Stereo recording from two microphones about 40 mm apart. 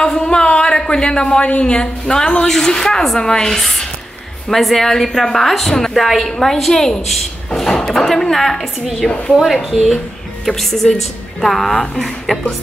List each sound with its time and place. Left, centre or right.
0.0 s a sound: centre
1.6 s a woman's voice: left; by 9.8 s centre
10.4 s a woman's voice: centre